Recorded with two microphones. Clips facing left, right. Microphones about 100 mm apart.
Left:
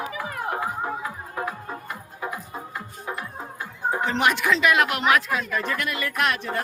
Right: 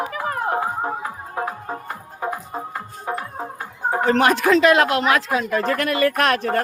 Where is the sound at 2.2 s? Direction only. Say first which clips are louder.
Right 6 dB; 40° right (ahead or behind).